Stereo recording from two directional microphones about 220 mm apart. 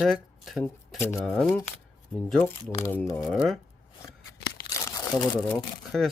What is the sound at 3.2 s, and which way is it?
Speech, centre (ahead or behind).